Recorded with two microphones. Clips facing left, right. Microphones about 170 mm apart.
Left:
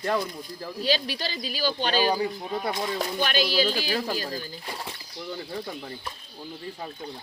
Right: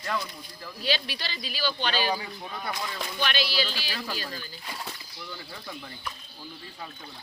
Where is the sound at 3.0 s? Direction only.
45° left (ahead or behind).